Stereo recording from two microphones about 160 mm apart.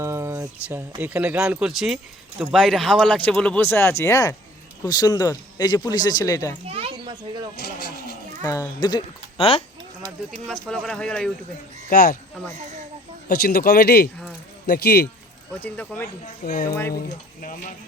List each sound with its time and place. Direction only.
0.0 s speech: 15° right (ahead or behind); by 6.6 s 20° left (ahead or behind)
6.7 s a sound: 35° right (ahead or behind)
7.5 s speech: 90° left
8.4 s speech: 25° left (ahead or behind)
10.4 s speech: 5° left (ahead or behind)
11.9 s speech: 70° left (ahead or behind)
13.2 s a man's voice: 75° left (ahead or behind)
14.7 s speech: 90° left
15.6 s speech: 10° left (ahead or behind)
16.2 s speech: 60° left (ahead or behind)